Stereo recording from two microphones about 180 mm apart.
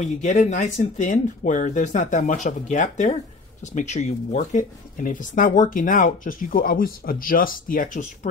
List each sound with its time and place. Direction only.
0.0 s speech: 40° left (ahead or behind)